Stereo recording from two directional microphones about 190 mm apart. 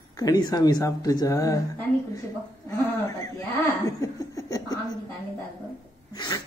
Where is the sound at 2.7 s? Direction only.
15° left (ahead or behind).